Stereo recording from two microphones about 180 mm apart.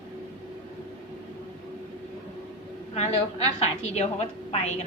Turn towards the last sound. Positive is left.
turn(degrees=35)  # may be behind; listen again after turning